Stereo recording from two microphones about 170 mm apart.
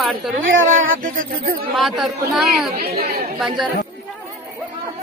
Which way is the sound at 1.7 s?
Centre (ahead or behind).